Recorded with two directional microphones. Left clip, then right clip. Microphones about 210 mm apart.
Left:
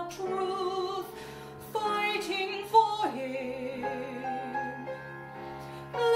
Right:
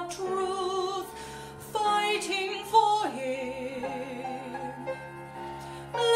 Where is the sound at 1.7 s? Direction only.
10° right (ahead or behind).